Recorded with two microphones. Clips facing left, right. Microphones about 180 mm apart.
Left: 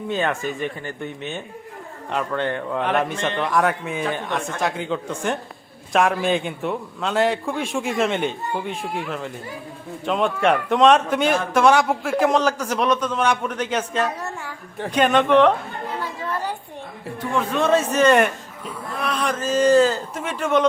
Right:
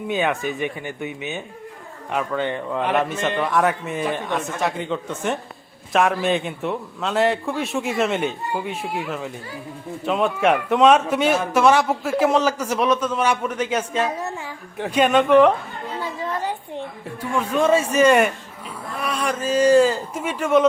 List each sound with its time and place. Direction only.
0.6 s a man's voice: 10° right (ahead or behind)
17.2 s a man's voice: 10° right (ahead or behind)